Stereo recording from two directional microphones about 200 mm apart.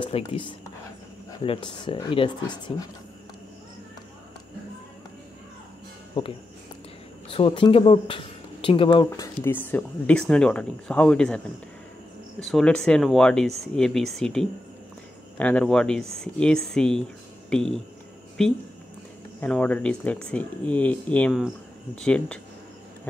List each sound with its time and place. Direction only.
0.0 s speech: 25° left (ahead or behind)
7.2 s speech: 25° left (ahead or behind); by 22.4 s 5° left (ahead or behind)